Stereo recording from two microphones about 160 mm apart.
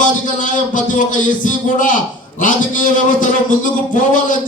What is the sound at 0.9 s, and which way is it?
Speech, 55° left (ahead or behind).